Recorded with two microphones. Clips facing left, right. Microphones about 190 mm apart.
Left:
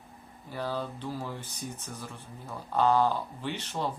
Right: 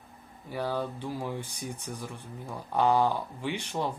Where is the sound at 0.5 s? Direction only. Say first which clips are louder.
Right 2 dB; 10° right (ahead or behind).